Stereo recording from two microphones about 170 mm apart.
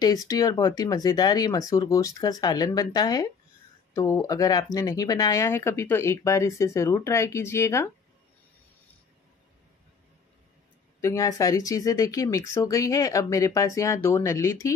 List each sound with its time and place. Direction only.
0.0 s speech: 20° left (ahead or behind)
11.0 s speech: 20° left (ahead or behind)